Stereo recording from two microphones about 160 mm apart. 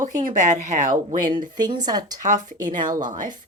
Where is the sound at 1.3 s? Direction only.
25° right (ahead or behind).